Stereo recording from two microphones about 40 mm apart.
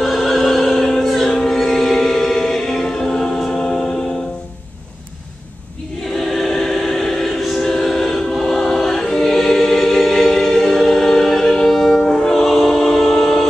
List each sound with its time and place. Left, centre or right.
0.0 s music: centre
1.6 s choir: centre
3.5 s music: centre
6.1 s choir: centre
12.6 s music: centre